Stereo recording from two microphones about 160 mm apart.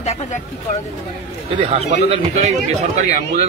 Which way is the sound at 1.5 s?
40° right (ahead or behind).